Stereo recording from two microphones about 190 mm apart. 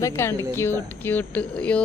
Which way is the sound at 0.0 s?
15° left (ahead or behind).